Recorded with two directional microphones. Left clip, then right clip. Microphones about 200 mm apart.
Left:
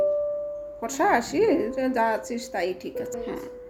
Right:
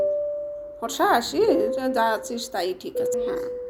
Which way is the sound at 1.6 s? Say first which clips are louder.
Right 2 dB; 35° left (ahead or behind).